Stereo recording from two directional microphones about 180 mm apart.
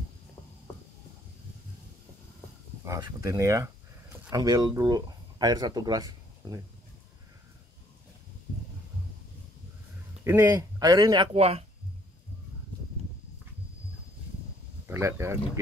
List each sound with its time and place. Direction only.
2.9 s speech: 15° right (ahead or behind)
10.2 s speech: 10° right (ahead or behind)
11.3 s speech: 35° right (ahead or behind)
14.9 s speech: 15° right (ahead or behind)